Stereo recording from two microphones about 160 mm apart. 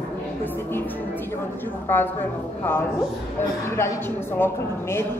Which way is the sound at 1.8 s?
15° left (ahead or behind).